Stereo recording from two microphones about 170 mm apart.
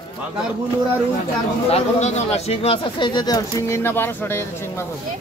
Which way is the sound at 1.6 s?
40° left (ahead or behind).